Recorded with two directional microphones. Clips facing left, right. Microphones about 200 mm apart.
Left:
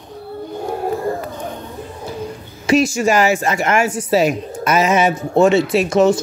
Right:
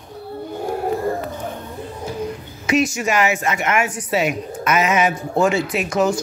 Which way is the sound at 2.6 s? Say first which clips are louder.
Left 4 dB; 30° left (ahead or behind).